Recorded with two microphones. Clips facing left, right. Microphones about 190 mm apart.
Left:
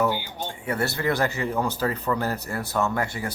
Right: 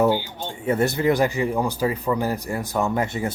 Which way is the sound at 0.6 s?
20° right (ahead or behind).